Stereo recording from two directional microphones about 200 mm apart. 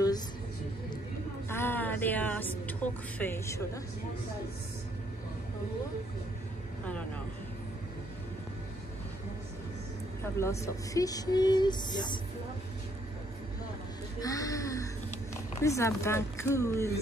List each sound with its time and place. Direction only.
1.5 s a woman's voice: 10° left (ahead or behind)
10.4 s speech: 15° left (ahead or behind)
14.2 s speech: 15° left (ahead or behind)